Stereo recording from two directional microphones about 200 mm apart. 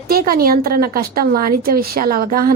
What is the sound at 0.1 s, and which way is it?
A woman's voice, 45° right (ahead or behind).